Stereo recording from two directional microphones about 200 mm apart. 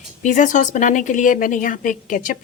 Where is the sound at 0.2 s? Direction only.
40° left (ahead or behind).